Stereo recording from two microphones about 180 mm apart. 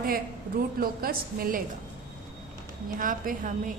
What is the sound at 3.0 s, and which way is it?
Speech, 50° right (ahead or behind).